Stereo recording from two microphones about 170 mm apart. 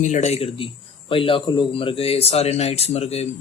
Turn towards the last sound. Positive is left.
turn(degrees=40)  # may be behind; listen again after turning